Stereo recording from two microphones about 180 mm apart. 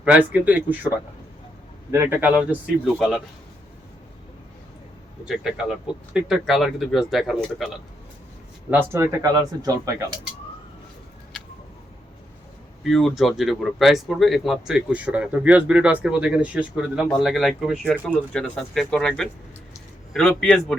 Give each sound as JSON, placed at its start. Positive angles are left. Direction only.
{"t": 0.0, "sound": "a man's voice", "side_deg": -10}
{"t": 5.2, "sound": "speech", "side_deg": 0}
{"t": 8.9, "sound": "speech", "side_deg": -20}
{"t": 12.8, "sound": "speech", "side_deg": 0}